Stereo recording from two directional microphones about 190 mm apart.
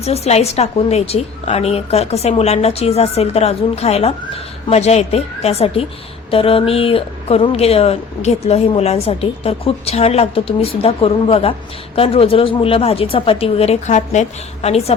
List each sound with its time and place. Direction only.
0.0 s speech: 35° left (ahead or behind)